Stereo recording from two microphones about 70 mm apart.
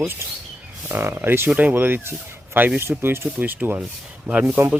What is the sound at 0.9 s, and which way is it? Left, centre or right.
Speech, right.